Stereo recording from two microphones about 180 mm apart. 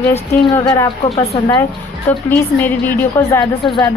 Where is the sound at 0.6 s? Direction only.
20° left (ahead or behind).